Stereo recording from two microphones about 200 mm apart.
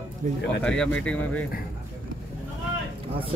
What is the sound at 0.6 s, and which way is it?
Speech, 5° left (ahead or behind).